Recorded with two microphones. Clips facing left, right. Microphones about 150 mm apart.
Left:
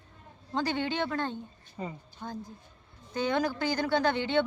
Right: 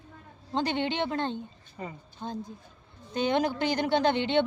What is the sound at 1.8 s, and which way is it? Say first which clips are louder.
Speech: left 1 dB; 20° left (ahead or behind).